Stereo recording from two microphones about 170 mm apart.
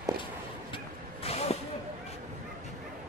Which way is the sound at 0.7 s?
35° left (ahead or behind).